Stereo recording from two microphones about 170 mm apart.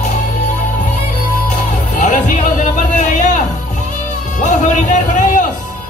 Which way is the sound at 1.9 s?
45° left (ahead or behind).